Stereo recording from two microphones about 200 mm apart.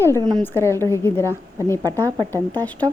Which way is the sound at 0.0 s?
15° left (ahead or behind).